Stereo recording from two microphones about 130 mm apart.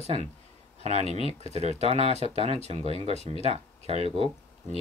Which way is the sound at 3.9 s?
50° left (ahead or behind).